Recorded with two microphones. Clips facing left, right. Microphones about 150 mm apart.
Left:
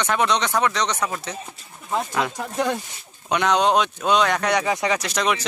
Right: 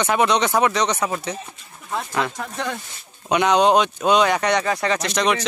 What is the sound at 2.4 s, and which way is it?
Speech, 15° left (ahead or behind).